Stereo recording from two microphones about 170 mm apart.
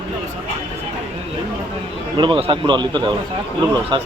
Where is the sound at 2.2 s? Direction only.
30° right (ahead or behind).